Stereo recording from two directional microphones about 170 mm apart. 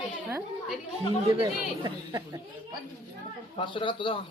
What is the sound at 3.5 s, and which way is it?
Speech, 30° left (ahead or behind).